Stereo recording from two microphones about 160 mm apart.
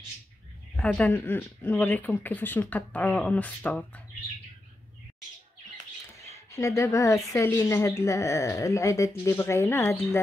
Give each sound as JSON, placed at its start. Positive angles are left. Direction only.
{"t": 0.7, "sound": "speech", "side_deg": 10}
{"t": 6.1, "sound": "a sound", "side_deg": 20}
{"t": 7.2, "sound": "speech", "side_deg": 20}